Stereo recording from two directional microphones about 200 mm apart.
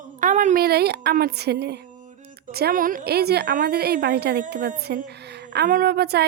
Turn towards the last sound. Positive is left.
turn(degrees=-55)  # may be behind; listen again after turning